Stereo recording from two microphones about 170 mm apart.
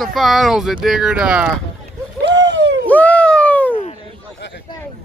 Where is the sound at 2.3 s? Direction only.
90° right.